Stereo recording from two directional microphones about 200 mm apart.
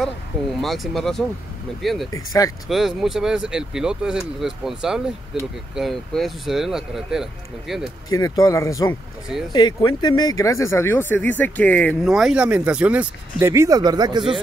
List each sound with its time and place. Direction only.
0.6 s speech: centre (ahead or behind)
2.1 s speech: 15° left (ahead or behind)
2.7 s speech: centre (ahead or behind)
8.1 s speech: 20° left (ahead or behind); by 14.3 s 20° right (ahead or behind)